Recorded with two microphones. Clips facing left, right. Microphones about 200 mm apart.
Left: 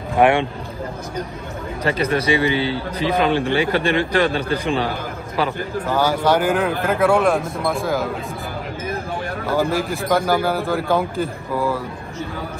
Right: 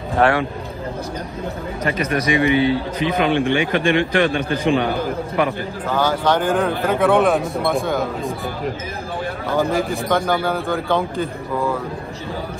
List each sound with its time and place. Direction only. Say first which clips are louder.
0.2 s speech: left 2 dB; 25° left (ahead or behind)
1.9 s a man's voice: left 2 dB; 30° left (ahead or behind)
5.9 s a man's voice: even; 10° left (ahead or behind)
9.5 s a man's voice: right 1 dB; 5° left (ahead or behind)